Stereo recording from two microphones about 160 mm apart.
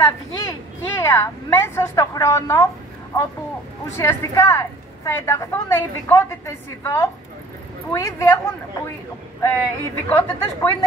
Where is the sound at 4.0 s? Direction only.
15° left (ahead or behind).